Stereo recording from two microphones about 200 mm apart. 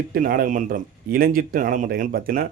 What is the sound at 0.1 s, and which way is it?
A man's voice, 45° right (ahead or behind).